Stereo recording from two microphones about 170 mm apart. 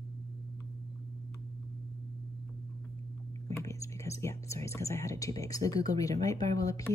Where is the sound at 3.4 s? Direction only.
15° left (ahead or behind).